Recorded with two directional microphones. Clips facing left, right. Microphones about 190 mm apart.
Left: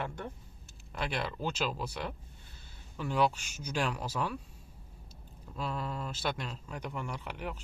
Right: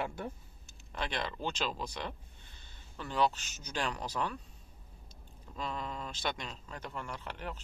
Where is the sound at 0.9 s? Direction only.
5° left (ahead or behind).